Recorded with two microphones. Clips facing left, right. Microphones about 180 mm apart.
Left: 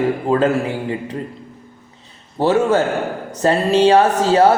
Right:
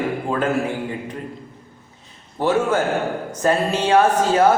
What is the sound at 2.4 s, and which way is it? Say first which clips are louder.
A man's voice: left 4 dB; 35° left (ahead or behind).